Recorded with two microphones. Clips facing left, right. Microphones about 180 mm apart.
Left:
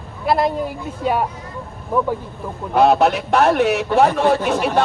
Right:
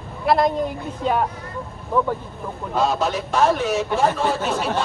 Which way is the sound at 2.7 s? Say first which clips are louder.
Left 7 dB; 65° left (ahead or behind).